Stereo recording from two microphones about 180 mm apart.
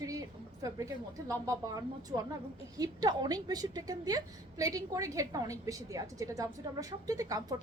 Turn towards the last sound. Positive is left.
turn(degrees=-20)  # may be behind; listen again after turning